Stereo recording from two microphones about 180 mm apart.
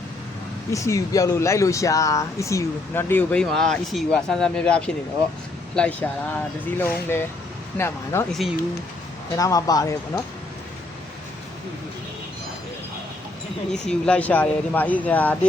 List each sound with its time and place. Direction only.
0.7 s speech: 15° left (ahead or behind)
8.3 s speech: centre (ahead or behind)
9.3 s speech: 20° left (ahead or behind)
13.7 s speech: 5° left (ahead or behind)